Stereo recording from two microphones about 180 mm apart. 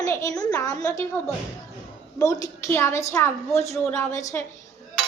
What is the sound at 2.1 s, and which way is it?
A woman's voice, 20° left (ahead or behind).